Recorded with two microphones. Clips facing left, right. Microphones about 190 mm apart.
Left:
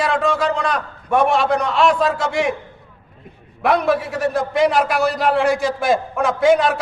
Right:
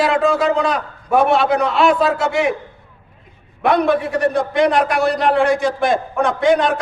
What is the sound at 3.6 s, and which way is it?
A man's voice, centre (ahead or behind).